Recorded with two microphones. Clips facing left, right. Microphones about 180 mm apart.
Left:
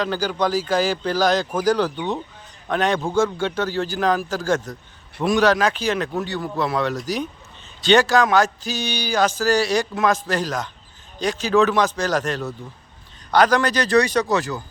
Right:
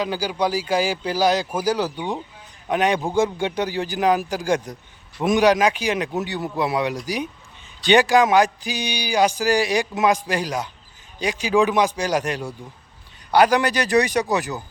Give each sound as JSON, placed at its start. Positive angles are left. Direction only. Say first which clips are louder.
{"t": 0.0, "sound": "speech", "louder": "left 1 dB", "side_deg": -10}